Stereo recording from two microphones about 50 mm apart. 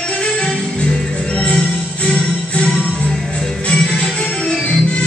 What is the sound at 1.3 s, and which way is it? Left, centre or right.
Music, left.